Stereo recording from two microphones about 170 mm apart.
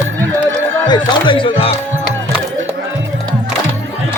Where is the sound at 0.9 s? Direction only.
30° left (ahead or behind).